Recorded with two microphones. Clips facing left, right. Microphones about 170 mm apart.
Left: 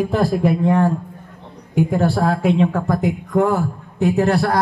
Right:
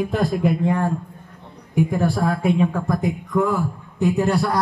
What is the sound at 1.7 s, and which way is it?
A woman's voice, 75° left (ahead or behind).